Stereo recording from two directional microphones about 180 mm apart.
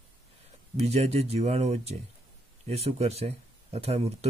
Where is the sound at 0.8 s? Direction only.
35° right (ahead or behind).